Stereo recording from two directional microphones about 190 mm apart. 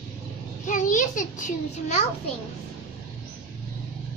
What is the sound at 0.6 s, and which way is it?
Speech, 40° left (ahead or behind).